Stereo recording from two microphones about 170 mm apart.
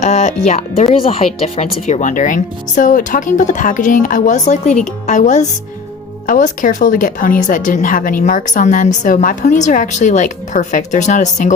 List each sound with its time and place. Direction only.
0.0 s speech: 40° left (ahead or behind)